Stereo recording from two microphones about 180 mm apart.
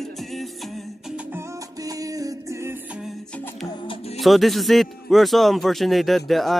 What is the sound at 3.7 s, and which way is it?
Music, 30° left (ahead or behind).